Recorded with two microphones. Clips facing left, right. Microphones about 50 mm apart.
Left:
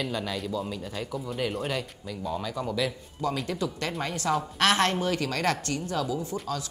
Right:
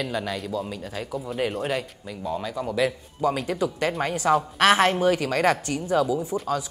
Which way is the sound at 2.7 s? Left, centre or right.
Right.